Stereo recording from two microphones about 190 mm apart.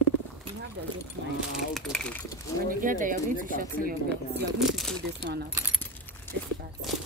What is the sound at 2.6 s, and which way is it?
Speech, 45° right (ahead or behind).